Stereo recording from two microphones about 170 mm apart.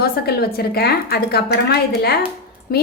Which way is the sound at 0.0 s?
65° left (ahead or behind).